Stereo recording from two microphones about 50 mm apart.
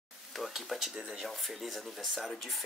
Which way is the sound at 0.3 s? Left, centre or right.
Centre.